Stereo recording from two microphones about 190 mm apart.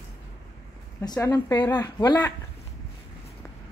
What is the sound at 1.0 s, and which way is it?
Speech, 20° left (ahead or behind).